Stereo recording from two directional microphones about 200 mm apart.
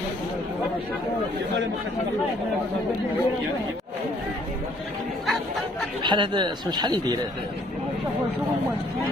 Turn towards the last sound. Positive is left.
turn(degrees=-20)  # may be behind; listen again after turning